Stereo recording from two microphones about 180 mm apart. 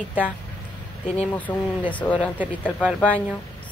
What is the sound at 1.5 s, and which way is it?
Speech, 10° left (ahead or behind).